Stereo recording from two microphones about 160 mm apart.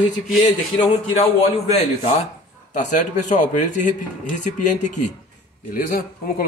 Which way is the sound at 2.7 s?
50° left (ahead or behind).